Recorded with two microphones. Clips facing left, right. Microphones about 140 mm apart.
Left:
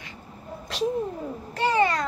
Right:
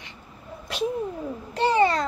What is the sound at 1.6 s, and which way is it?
Babbling, 25° right (ahead or behind).